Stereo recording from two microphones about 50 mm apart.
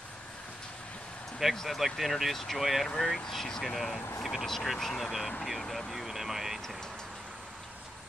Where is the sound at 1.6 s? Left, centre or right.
Centre.